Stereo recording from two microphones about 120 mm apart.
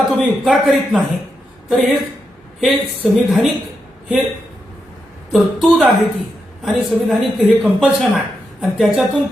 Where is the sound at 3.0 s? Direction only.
5° right (ahead or behind).